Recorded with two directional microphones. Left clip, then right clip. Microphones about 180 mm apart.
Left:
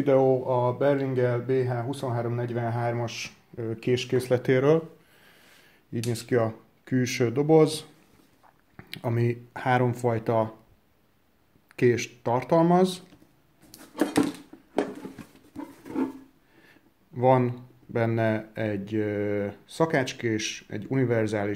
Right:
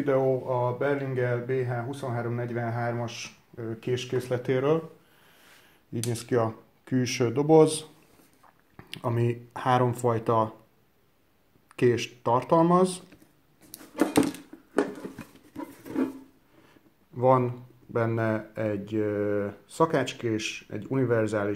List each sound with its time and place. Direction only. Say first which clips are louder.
0.0 s speech: left 3 dB; 40° left (ahead or behind)
6.0 s speech: left 1 dB; 10° left (ahead or behind)
11.7 s speech: left 1 dB; 10° left (ahead or behind)
17.2 s speech: left 1 dB; 25° left (ahead or behind)